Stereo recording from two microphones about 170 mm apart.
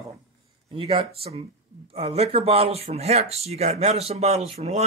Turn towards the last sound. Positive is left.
turn(degrees=-40)  # may be behind; listen again after turning